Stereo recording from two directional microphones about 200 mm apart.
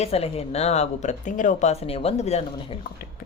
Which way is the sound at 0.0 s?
30° left (ahead or behind).